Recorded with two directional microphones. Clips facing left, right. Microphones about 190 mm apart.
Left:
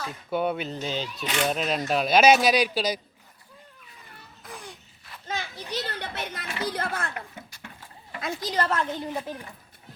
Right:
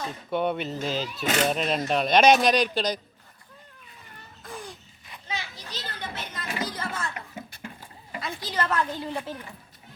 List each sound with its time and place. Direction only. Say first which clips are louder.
0.3 s speech: even; 5° left (ahead or behind)
1.2 s speech: right 4 dB; 45° right (ahead or behind)
1.5 s speech: right 1 dB; centre (ahead or behind)
4.4 s a sound: right 3 dB; centre (ahead or behind)
5.3 s children playing: left 3 dB; 50° left (ahead or behind)
5.7 s a sound: left 4 dB; 65° left (ahead or behind)
8.2 s a woman's voice: left 3 dB; 40° left (ahead or behind); by 9.4 s 15° left (ahead or behind)